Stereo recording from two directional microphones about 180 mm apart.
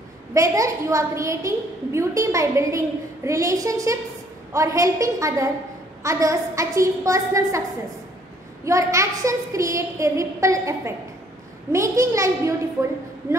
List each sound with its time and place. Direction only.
0.3 s a woman's voice: 15° right (ahead or behind)
8.6 s a woman's voice: 15° right (ahead or behind)